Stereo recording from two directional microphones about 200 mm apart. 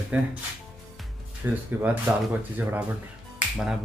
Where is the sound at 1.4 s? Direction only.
10° right (ahead or behind).